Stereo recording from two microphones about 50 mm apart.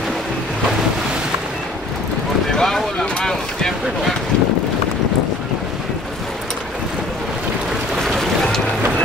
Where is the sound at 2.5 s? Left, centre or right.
Centre.